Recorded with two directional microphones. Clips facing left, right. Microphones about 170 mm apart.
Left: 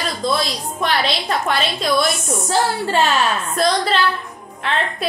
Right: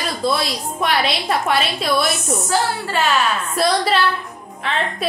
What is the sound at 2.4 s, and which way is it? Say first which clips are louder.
Speech: left 3 dB; 25° left (ahead or behind).